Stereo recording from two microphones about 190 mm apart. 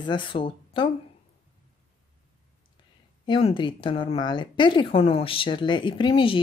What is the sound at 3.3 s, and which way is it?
A woman's voice, 25° left (ahead or behind).